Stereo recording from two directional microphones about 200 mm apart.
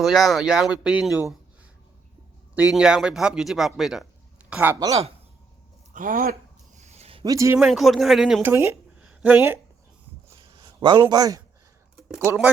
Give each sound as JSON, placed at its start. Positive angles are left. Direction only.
{"t": 0.0, "sound": "speech", "side_deg": 0}
{"t": 2.7, "sound": "speech", "side_deg": -5}
{"t": 5.9, "sound": "speech", "side_deg": -45}
{"t": 6.7, "sound": "a sound", "side_deg": -35}
{"t": 7.3, "sound": "a man's voice", "side_deg": -15}
{"t": 7.6, "sound": "a woman's voice", "side_deg": 0}
{"t": 10.3, "sound": "a sound", "side_deg": -25}
{"t": 11.0, "sound": "a man's voice", "side_deg": -20}
{"t": 11.9, "sound": "a sound", "side_deg": 0}
{"t": 12.2, "sound": "a man's voice", "side_deg": -10}